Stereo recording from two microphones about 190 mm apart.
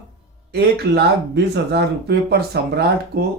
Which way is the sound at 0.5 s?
60° right (ahead or behind).